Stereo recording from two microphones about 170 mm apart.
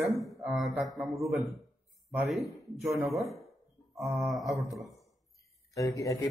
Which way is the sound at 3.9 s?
Centre (ahead or behind).